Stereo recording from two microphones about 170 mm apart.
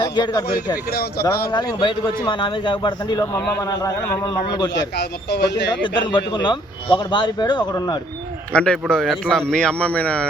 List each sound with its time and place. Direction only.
0.0 s a man's voice: 25° left (ahead or behind)
1.5 s a man's voice: 25° left (ahead or behind)
4.7 s speech: 90° left
6.1 s a man's voice: 30° left (ahead or behind)
8.5 s a man's voice: 5° left (ahead or behind)